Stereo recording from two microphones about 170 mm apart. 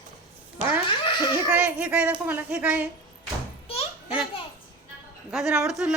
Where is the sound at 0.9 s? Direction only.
30° left (ahead or behind).